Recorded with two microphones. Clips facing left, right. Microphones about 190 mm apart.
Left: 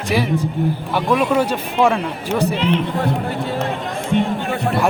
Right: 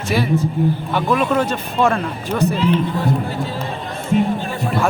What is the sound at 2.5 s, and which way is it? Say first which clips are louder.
Speech: right 1 dB; 75° left (ahead or behind).